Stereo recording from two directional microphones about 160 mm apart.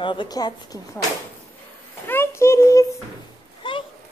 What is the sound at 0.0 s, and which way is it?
Speech, 30° left (ahead or behind).